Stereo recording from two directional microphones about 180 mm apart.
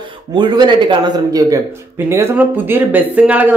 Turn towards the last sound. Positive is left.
turn(degrees=-10)  # may be behind; listen again after turning